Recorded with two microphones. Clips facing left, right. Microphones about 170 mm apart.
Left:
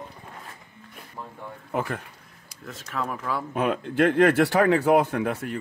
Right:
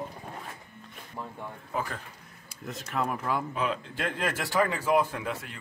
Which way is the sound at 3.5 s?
60° left (ahead or behind).